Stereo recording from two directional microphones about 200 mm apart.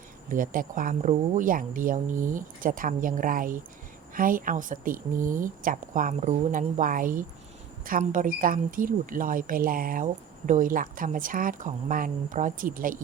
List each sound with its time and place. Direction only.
0.3 s a woman's voice: 45° right (ahead or behind)